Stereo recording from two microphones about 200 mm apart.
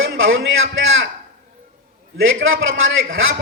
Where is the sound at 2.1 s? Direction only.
80° right.